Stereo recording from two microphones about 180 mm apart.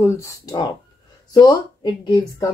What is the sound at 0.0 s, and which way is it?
Speech, 15° left (ahead or behind).